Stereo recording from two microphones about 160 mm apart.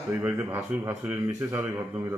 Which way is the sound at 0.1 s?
10° right (ahead or behind).